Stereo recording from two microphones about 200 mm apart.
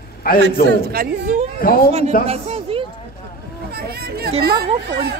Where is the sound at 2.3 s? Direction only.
30° right (ahead or behind).